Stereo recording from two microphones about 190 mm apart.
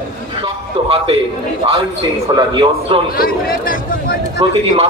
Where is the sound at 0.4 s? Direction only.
30° right (ahead or behind).